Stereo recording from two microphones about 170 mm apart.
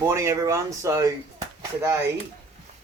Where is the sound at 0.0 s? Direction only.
15° right (ahead or behind).